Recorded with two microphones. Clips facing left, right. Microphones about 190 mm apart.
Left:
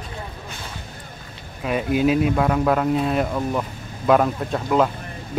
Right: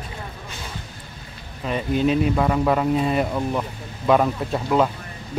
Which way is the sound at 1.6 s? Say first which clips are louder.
Left 1 dB; 5° left (ahead or behind).